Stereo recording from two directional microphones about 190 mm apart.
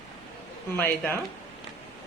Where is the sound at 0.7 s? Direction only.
10° left (ahead or behind).